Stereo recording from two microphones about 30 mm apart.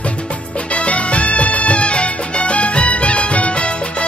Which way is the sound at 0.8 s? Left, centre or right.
Left.